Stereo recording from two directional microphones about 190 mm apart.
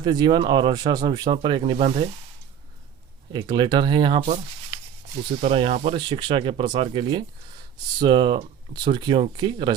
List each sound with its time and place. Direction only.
0.0 s speech: 20° right (ahead or behind)
3.3 s speech: 20° right (ahead or behind)
5.4 s speech: 30° right (ahead or behind)